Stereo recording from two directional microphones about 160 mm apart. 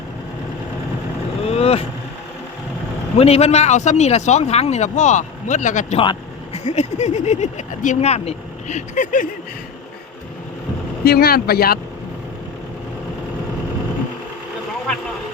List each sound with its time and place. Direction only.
1.5 s vehicle: 40° left (ahead or behind)
3.2 s a man's voice: 40° left (ahead or behind)
6.0 s vehicle: 35° left (ahead or behind)
6.7 s a man's voice: 45° left (ahead or behind)
11.0 s speech: 75° left (ahead or behind)